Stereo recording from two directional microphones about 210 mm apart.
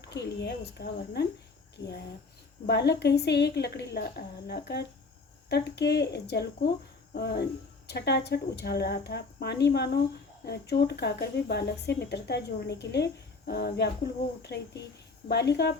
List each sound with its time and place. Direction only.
0.1 s speech: 55° left (ahead or behind)
2.6 s speech: 50° left (ahead or behind)
15.3 s speech: 55° left (ahead or behind)